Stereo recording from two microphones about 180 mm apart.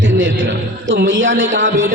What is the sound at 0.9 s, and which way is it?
Speech, 90° right.